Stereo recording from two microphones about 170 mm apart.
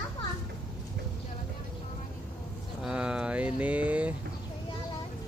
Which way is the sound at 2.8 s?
5° right (ahead or behind).